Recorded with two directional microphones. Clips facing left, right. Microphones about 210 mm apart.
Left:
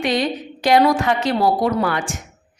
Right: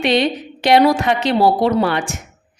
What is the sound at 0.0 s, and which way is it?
Speech, 25° right (ahead or behind).